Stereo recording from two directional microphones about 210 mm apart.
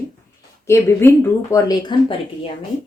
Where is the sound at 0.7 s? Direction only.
10° left (ahead or behind).